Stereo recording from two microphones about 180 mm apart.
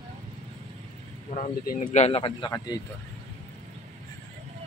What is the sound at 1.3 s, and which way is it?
Speech, 45° left (ahead or behind).